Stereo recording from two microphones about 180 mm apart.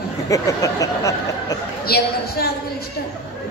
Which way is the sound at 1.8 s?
60° left (ahead or behind).